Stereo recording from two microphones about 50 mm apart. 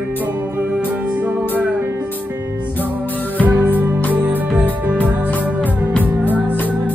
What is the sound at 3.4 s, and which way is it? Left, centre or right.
Music, right.